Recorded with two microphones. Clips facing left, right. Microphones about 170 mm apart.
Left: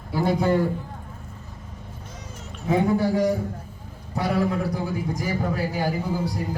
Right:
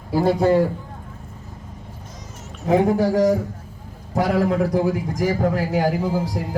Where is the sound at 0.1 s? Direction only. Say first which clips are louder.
Right 5 dB; 40° right (ahead or behind).